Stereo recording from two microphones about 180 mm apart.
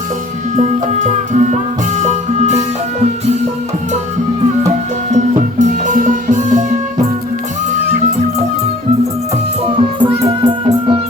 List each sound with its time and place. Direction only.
0.5 s music: 40° right (ahead or behind)
5.1 s music: 45° right (ahead or behind)
9.7 s music: 30° right (ahead or behind)